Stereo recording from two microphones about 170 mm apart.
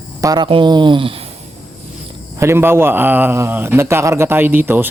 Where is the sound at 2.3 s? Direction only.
15° right (ahead or behind).